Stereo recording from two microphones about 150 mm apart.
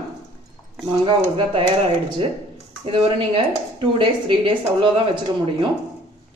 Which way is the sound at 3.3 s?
35° right (ahead or behind).